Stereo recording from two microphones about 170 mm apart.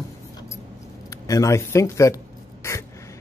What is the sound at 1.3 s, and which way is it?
Speech, 20° left (ahead or behind).